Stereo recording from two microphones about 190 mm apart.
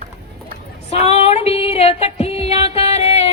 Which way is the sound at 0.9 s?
35° left (ahead or behind).